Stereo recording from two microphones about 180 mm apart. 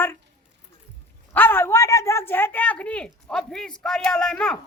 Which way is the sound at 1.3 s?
10° left (ahead or behind).